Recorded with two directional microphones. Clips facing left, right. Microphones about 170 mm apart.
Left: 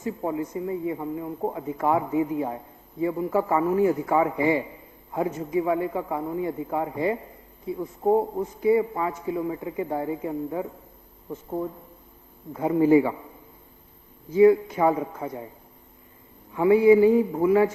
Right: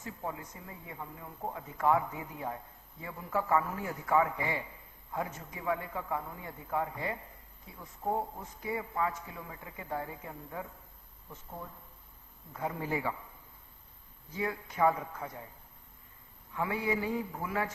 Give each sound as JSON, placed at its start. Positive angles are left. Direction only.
{"t": 0.2, "sound": "a man's voice", "side_deg": 20}
{"t": 7.8, "sound": "speech", "side_deg": 30}
{"t": 8.6, "sound": "a man's voice", "side_deg": 15}
{"t": 11.3, "sound": "speech", "side_deg": 35}
{"t": 12.5, "sound": "a man's voice", "side_deg": 20}
{"t": 14.3, "sound": "a man's voice", "side_deg": 15}
{"t": 16.6, "sound": "a man's voice", "side_deg": 15}